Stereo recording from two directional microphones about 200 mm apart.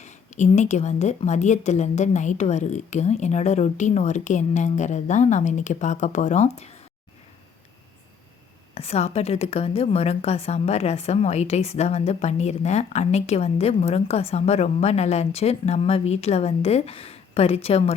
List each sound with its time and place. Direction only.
0.0 s a woman's voice: 35° left (ahead or behind)
8.7 s a woman's voice: 30° left (ahead or behind)